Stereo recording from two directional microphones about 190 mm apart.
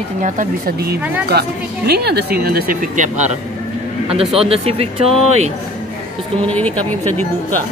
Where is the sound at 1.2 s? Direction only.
55° right (ahead or behind); by 3.4 s 40° right (ahead or behind).